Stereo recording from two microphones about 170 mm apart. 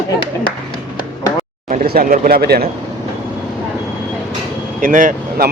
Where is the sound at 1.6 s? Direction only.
55° right (ahead or behind).